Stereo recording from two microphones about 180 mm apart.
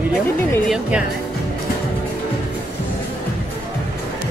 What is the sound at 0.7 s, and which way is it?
Speech, 5° right (ahead or behind).